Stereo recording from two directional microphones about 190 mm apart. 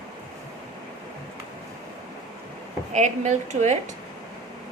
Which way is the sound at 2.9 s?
40° right (ahead or behind).